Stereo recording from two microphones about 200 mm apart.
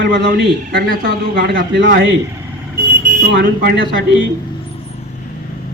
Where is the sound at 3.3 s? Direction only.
55° right (ahead or behind).